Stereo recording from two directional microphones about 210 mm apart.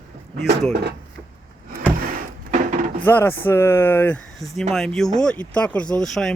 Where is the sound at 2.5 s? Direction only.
35° right (ahead or behind).